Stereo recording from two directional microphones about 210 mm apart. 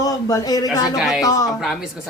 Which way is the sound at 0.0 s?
15° left (ahead or behind).